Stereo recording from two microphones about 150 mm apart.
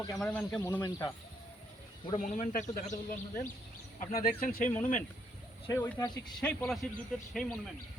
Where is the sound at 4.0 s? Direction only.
65° left (ahead or behind).